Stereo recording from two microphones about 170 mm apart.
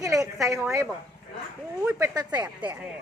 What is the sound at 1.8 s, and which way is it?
Speech, 10° right (ahead or behind).